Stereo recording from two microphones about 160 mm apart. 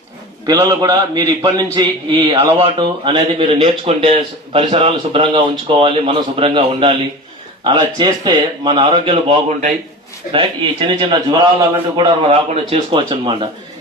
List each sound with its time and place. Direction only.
0.4 s a man's voice: 20° right (ahead or behind)